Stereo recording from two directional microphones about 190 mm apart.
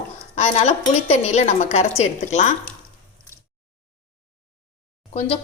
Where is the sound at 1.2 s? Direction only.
35° left (ahead or behind).